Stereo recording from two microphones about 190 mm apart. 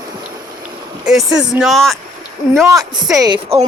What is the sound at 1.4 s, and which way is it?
Speech, 5° right (ahead or behind).